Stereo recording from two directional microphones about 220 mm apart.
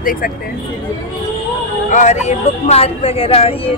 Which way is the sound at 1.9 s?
30° left (ahead or behind).